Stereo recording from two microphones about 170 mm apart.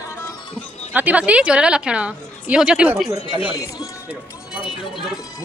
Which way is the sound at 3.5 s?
20° left (ahead or behind).